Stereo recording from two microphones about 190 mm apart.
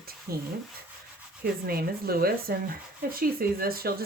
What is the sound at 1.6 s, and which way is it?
Speech, 55° right (ahead or behind).